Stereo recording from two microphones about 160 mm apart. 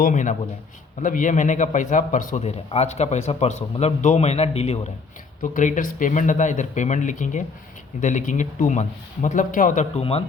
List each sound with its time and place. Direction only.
0.0 s a man's voice: 50° left (ahead or behind)
5.4 s a man's voice: 55° left (ahead or behind); by 10.2 s 40° left (ahead or behind)